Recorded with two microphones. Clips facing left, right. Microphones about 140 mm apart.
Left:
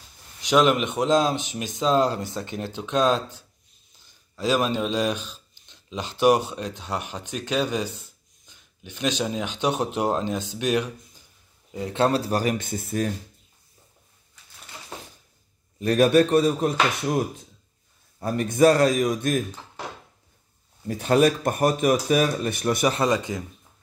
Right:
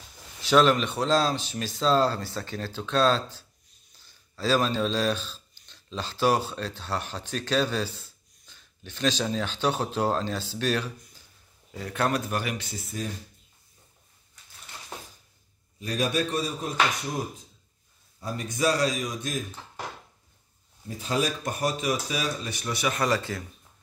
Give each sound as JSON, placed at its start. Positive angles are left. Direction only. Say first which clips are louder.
{"t": 0.4, "sound": "speech", "louder": "left 1 dB", "side_deg": 15}
{"t": 8.5, "sound": "a sound", "louder": "left 2 dB", "side_deg": 15}
{"t": 9.2, "sound": "speech", "louder": "left 2 dB", "side_deg": 15}
{"t": 15.8, "sound": "speech", "louder": "left 10 dB", "side_deg": 60}
{"t": 18.2, "sound": "speech", "louder": "left 9 dB", "side_deg": 60}
{"t": 20.8, "sound": "speech", "louder": "left 9 dB", "side_deg": 70}
{"t": 22.8, "sound": "speech", "louder": "left 2 dB", "side_deg": 25}